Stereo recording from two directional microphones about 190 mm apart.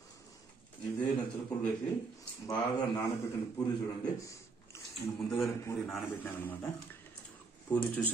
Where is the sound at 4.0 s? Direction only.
15° left (ahead or behind).